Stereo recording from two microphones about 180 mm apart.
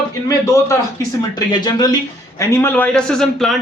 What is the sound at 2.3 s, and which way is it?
A man's voice, 15° left (ahead or behind).